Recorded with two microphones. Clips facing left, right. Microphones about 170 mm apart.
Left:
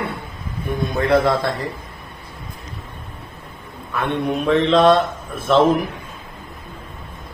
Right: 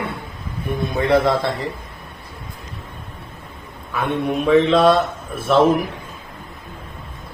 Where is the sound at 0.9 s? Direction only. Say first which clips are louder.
Even; centre (ahead or behind).